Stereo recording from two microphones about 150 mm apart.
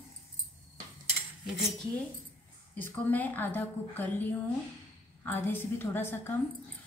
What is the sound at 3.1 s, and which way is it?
Speech, 10° left (ahead or behind).